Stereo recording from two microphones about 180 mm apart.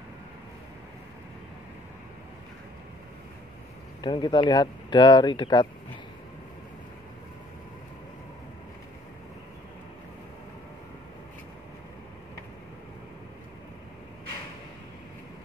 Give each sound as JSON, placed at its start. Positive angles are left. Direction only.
{"t": 4.0, "sound": "speech", "side_deg": 25}